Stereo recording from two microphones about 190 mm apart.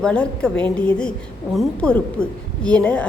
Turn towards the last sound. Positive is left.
turn(degrees=5)  # may be behind; listen again after turning